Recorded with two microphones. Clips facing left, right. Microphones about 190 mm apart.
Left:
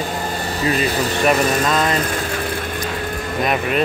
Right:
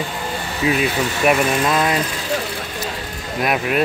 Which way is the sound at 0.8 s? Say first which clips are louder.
Left 1 dB; 40° left (ahead or behind).